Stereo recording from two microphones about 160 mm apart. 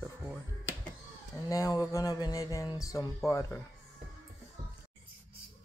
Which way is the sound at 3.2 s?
15° left (ahead or behind).